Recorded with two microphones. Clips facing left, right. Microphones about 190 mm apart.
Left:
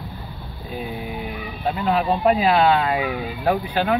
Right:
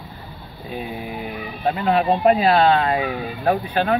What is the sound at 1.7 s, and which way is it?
Speech, 60° right (ahead or behind).